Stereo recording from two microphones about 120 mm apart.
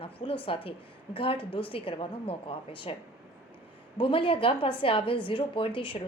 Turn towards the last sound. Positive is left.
turn(degrees=45)  # may be behind; listen again after turning